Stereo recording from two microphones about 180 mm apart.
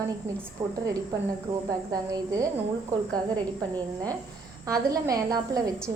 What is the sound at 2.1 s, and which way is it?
A woman's voice, 20° right (ahead or behind).